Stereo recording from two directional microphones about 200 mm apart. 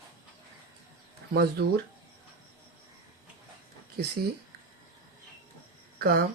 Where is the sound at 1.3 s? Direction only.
55° right (ahead or behind).